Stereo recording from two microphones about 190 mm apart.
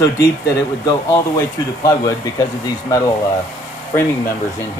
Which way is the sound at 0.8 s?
20° left (ahead or behind).